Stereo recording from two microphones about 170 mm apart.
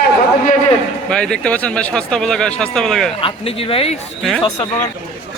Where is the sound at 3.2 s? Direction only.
35° left (ahead or behind).